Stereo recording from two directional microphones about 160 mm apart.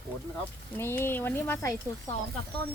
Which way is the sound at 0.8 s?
15° left (ahead or behind).